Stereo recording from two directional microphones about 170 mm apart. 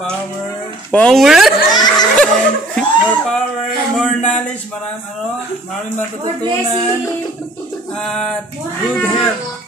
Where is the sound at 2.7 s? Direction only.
5° left (ahead or behind).